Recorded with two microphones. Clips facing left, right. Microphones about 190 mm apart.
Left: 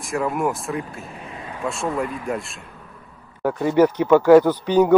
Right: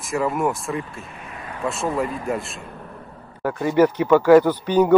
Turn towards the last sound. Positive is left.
turn(degrees=-10)  # may be behind; listen again after turning